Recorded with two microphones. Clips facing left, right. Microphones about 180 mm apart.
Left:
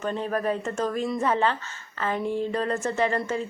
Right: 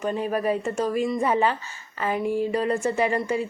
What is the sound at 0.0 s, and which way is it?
A woman's voice, 10° right (ahead or behind).